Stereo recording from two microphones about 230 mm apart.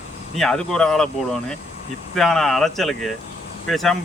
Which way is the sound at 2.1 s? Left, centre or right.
Centre.